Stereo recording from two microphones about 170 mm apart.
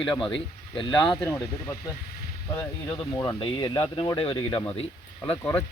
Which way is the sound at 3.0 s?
25° left (ahead or behind).